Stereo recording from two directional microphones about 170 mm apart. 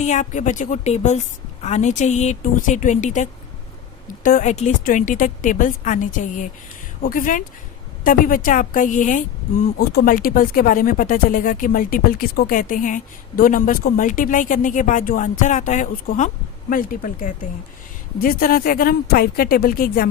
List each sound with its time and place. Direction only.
0.0 s speech: 45° left (ahead or behind)